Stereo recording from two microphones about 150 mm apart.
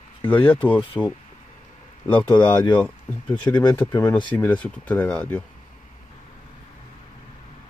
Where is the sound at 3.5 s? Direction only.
20° left (ahead or behind).